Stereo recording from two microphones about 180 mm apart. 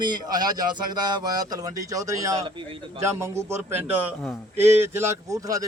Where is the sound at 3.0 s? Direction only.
15° right (ahead or behind).